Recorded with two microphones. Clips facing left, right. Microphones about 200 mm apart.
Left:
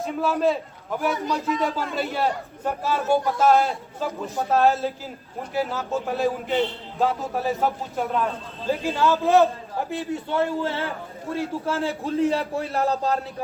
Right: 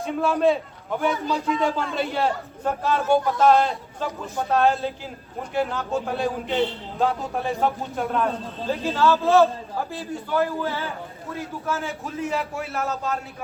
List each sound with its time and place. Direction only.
0.0 s a man's voice: centre (ahead or behind)
8.8 s a man's voice: 15° left (ahead or behind); by 13.1 s 35° left (ahead or behind)